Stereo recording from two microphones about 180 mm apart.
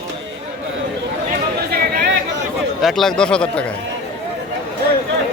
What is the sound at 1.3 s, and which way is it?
Chatter, 60° right (ahead or behind).